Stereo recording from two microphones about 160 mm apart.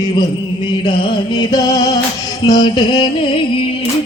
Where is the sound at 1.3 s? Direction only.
25° left (ahead or behind).